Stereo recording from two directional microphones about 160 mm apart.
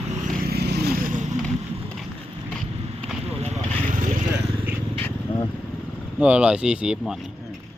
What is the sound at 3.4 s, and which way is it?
Vehicle, 50° right (ahead or behind).